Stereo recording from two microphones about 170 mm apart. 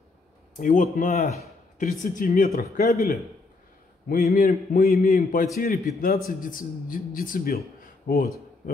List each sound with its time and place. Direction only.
0.6 s a man's voice: 55° left (ahead or behind)